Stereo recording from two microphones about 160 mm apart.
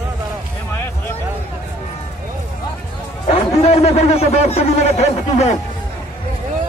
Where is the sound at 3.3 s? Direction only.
40° left (ahead or behind).